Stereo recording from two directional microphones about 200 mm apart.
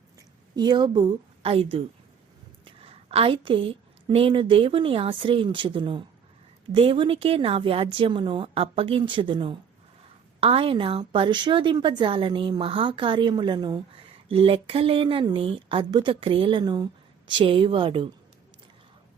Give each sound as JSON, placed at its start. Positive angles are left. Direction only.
{"t": 0.5, "sound": "speech", "side_deg": -20}
{"t": 2.8, "sound": "a sound", "side_deg": -30}
{"t": 4.1, "sound": "speech", "side_deg": -25}